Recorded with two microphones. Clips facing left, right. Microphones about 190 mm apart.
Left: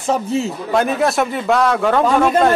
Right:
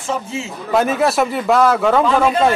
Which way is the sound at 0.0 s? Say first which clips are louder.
Left 5 dB; 40° left (ahead or behind).